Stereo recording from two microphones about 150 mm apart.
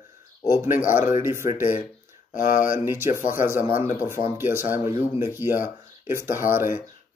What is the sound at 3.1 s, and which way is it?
Speech, 60° left (ahead or behind).